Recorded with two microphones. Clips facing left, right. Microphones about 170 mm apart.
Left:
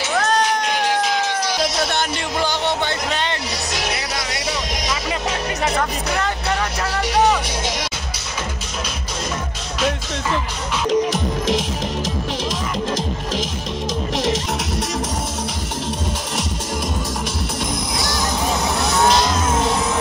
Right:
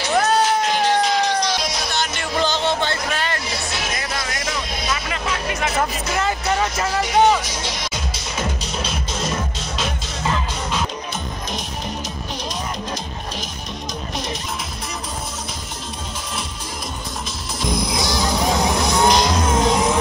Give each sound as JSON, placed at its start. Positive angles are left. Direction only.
{"t": 0.3, "sound": "cat", "side_deg": -5}
{"t": 2.4, "sound": "music", "side_deg": 15}
{"t": 5.8, "sound": "vehicle", "side_deg": -5}
{"t": 17.9, "sound": "music", "side_deg": -15}